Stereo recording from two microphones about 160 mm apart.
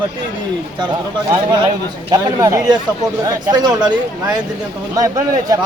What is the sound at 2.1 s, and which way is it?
Speech, 20° right (ahead or behind).